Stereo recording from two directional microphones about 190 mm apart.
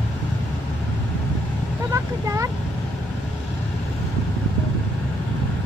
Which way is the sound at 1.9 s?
15° right (ahead or behind).